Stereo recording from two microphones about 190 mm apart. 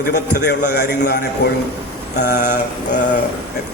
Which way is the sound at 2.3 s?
40° left (ahead or behind).